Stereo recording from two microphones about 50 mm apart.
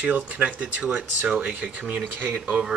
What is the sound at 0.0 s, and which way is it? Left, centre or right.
Speech, right.